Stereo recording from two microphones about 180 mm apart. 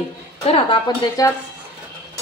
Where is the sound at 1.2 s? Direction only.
20° left (ahead or behind).